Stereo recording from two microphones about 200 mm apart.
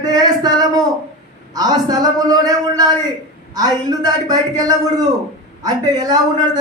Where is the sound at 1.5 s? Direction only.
20° right (ahead or behind).